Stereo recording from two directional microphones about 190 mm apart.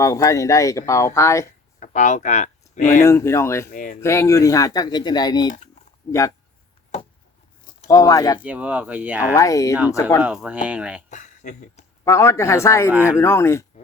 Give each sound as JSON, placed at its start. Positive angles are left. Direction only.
{"t": 0.0, "sound": "speech", "side_deg": 20}
{"t": 1.8, "sound": "speech", "side_deg": 40}
{"t": 3.0, "sound": "speech", "side_deg": 15}
{"t": 3.7, "sound": "speech", "side_deg": 45}
{"t": 4.0, "sound": "speech", "side_deg": 15}
{"t": 7.9, "sound": "speech", "side_deg": 20}
{"t": 8.4, "sound": "speech", "side_deg": -5}
{"t": 9.3, "sound": "speech", "side_deg": 15}
{"t": 10.2, "sound": "speech", "side_deg": -5}
{"t": 11.1, "sound": "a sound", "side_deg": 40}
{"t": 12.0, "sound": "speech", "side_deg": 15}
{"t": 12.9, "sound": "speech", "side_deg": -10}
{"t": 13.1, "sound": "speech", "side_deg": 15}